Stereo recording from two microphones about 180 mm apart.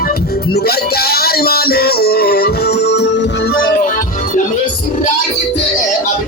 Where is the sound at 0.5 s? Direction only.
60° left (ahead or behind).